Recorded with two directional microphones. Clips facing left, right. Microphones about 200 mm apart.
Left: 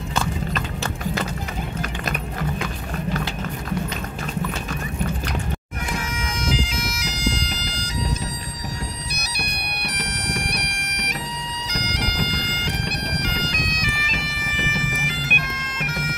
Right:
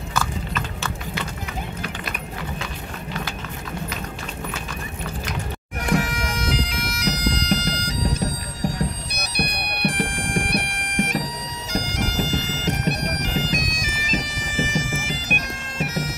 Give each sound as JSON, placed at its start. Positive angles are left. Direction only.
{"t": 0.1, "sound": "biting", "side_deg": 35}
{"t": 5.9, "sound": "bagpipes", "side_deg": -70}